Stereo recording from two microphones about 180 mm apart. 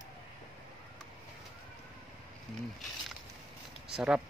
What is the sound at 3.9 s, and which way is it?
Speech, 5° right (ahead or behind).